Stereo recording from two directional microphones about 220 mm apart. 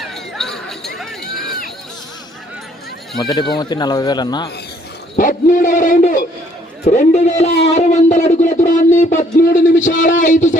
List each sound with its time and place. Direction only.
0.0 s chatter: centre (ahead or behind)
0.9 s run: centre (ahead or behind)
3.2 s speech: 15° left (ahead or behind)
5.1 s speech: 40° left (ahead or behind)